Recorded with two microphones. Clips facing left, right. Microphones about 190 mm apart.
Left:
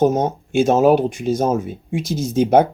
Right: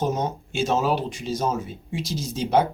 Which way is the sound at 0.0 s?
50° left (ahead or behind).